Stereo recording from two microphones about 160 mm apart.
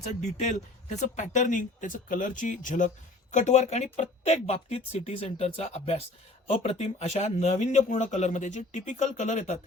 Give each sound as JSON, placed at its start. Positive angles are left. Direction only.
{"t": 0.0, "sound": "speech", "side_deg": 45}